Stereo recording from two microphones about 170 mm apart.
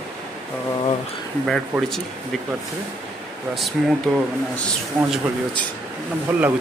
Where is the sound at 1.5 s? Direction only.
Centre (ahead or behind).